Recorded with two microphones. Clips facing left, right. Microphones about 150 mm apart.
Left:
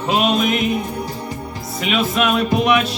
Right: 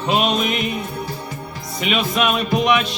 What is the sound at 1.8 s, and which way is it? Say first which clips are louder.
Speech: left 1 dB; centre (ahead or behind).